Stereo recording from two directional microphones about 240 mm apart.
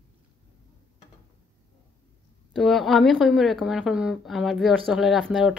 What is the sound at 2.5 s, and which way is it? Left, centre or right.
A woman's voice, centre.